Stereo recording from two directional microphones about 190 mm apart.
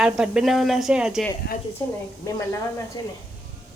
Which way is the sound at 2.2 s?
15° left (ahead or behind).